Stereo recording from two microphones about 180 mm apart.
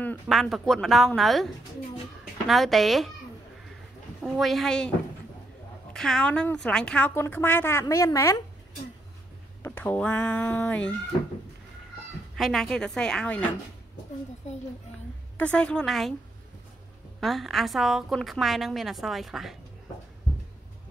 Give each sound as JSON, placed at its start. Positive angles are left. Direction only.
{"t": 0.0, "sound": "a woman's voice", "side_deg": 5}
{"t": 4.2, "sound": "a woman's voice", "side_deg": 0}
{"t": 5.9, "sound": "a woman's voice", "side_deg": 5}
{"t": 9.6, "sound": "speech", "side_deg": 10}
{"t": 12.4, "sound": "a woman's voice", "side_deg": 0}
{"t": 15.3, "sound": "a woman's voice", "side_deg": 5}
{"t": 17.2, "sound": "a woman's voice", "side_deg": 0}